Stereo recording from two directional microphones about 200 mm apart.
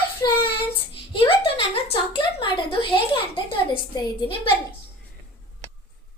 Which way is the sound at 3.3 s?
20° left (ahead or behind).